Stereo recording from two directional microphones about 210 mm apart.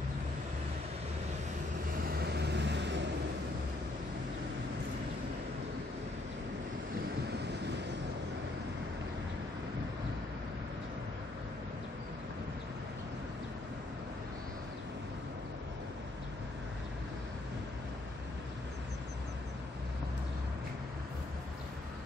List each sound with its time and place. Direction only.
2.0 s vehicle: 50° right (ahead or behind)